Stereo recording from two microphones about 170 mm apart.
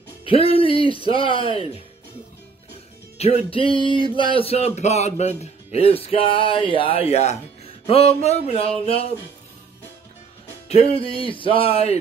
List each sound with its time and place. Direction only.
0.2 s speech: 35° left (ahead or behind)
3.2 s speech: 35° left (ahead or behind)
10.7 s speech: 35° left (ahead or behind)